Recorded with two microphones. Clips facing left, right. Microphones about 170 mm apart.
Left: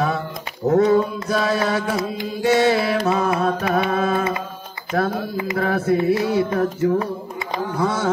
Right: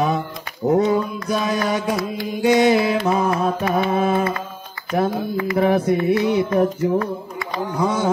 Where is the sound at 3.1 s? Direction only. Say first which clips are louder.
Even; 20° right (ahead or behind).